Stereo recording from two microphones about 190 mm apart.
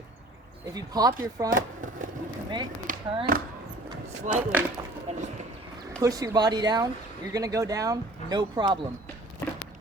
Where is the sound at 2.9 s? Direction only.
45° right (ahead or behind).